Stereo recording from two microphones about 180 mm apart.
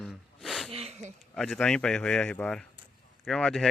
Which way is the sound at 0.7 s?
35° right (ahead or behind).